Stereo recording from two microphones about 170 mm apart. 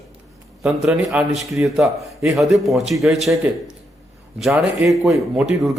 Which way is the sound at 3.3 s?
20° right (ahead or behind).